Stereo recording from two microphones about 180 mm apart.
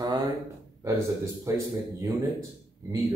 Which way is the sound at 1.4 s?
20° right (ahead or behind).